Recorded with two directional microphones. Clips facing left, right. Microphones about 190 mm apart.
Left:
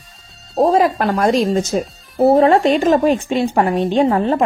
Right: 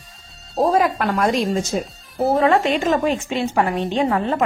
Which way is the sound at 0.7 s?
30° left (ahead or behind).